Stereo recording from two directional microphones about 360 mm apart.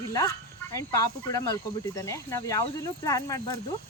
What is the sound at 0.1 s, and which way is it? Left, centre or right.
Speech, centre.